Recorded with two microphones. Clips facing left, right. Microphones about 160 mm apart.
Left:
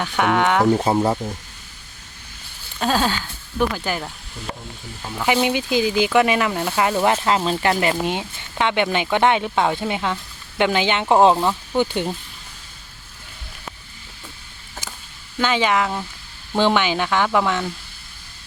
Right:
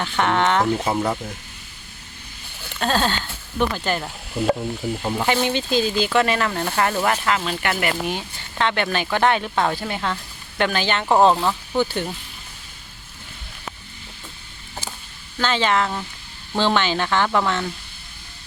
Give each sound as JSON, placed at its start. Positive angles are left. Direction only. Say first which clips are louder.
{"t": 0.0, "sound": "speech", "louder": "left 1 dB", "side_deg": 10}
{"t": 0.8, "sound": "speech", "louder": "left 4 dB", "side_deg": 30}
{"t": 2.8, "sound": "speech", "louder": "left 1 dB", "side_deg": 10}
{"t": 5.2, "sound": "speech", "louder": "left 4 dB", "side_deg": 10}
{"t": 15.4, "sound": "speech", "louder": "left 1 dB", "side_deg": 10}